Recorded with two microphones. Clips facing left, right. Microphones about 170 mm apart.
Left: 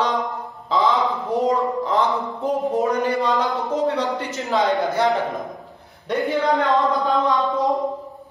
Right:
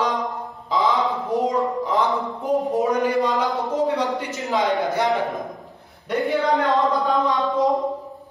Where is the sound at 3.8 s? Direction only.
20° right (ahead or behind).